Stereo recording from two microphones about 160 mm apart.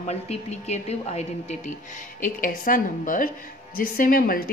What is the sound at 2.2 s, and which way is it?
A woman's voice, 60° left (ahead or behind).